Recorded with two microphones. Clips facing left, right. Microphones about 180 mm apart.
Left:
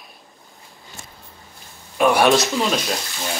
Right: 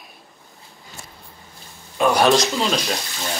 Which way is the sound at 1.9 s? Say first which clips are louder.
Left 1 dB; 5° left (ahead or behind).